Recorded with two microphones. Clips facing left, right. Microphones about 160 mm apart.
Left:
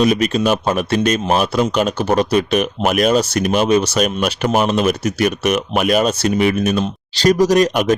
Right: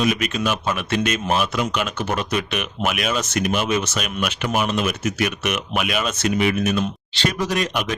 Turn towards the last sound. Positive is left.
turn(degrees=45)  # may be behind; listen again after turning